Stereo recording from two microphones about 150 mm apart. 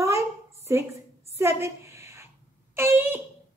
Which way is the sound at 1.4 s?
15° right (ahead or behind).